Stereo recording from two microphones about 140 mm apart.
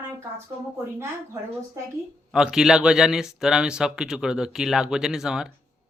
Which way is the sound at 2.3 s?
5° right (ahead or behind).